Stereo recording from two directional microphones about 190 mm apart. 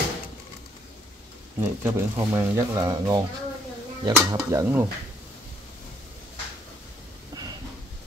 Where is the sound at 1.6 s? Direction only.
15° right (ahead or behind).